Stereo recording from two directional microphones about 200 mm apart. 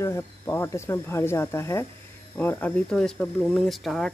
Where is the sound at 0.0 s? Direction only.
15° left (ahead or behind).